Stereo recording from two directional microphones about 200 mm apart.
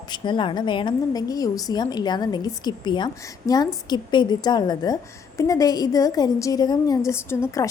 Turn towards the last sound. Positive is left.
turn(degrees=15)  # may be behind; listen again after turning